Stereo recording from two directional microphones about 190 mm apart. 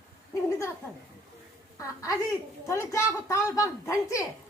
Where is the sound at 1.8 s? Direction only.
15° left (ahead or behind).